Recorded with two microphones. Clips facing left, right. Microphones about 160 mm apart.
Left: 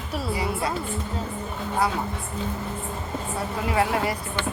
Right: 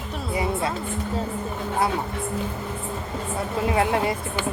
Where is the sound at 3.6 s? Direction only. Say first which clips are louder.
Right 2 dB; 25° right (ahead or behind).